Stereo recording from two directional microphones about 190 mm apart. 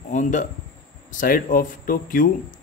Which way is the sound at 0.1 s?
40° left (ahead or behind).